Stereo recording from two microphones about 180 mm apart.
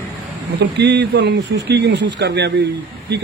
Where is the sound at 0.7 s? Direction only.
70° right (ahead or behind).